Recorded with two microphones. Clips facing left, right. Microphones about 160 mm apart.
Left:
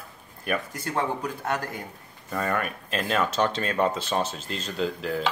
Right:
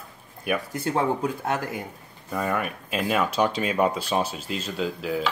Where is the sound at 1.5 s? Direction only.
15° right (ahead or behind).